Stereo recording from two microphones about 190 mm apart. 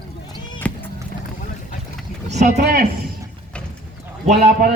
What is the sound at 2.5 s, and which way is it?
Speech, 50° right (ahead or behind).